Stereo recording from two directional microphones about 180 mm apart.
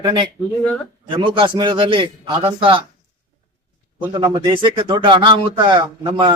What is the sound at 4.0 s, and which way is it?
A man's voice, 25° right (ahead or behind).